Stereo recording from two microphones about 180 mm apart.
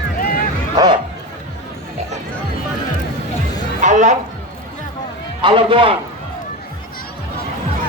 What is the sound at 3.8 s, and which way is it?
Speech, 45° right (ahead or behind).